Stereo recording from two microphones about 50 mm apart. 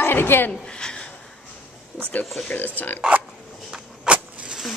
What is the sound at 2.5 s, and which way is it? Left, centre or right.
Speech, left.